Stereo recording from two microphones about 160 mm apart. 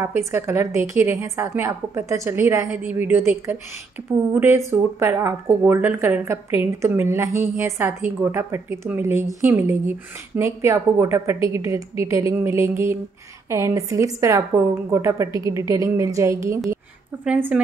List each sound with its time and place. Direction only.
0.0 s a woman's voice: 15° right (ahead or behind)